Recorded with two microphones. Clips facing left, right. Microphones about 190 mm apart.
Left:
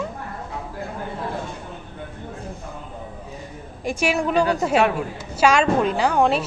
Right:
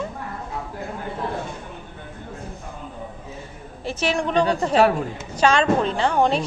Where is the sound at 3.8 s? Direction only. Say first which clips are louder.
Left 2 dB; 10° left (ahead or behind).